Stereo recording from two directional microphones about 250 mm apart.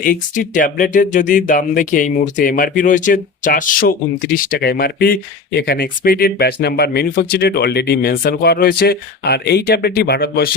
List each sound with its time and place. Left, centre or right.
0.0 s speech: left